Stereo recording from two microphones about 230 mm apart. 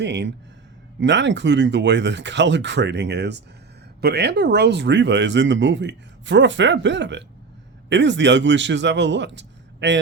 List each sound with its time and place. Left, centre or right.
0.0 s speech: right